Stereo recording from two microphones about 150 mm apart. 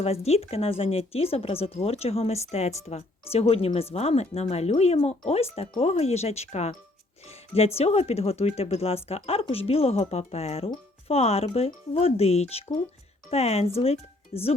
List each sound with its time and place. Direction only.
0.0 s speech: 45° left (ahead or behind)